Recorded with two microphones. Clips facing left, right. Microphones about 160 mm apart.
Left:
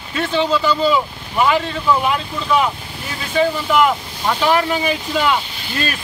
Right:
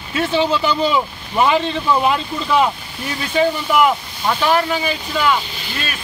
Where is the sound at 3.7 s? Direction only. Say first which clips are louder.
Left 1 dB; 5° right (ahead or behind).